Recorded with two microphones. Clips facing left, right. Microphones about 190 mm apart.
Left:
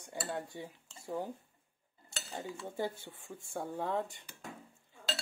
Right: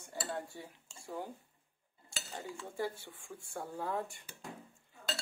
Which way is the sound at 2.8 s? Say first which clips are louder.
Even; 20° left (ahead or behind).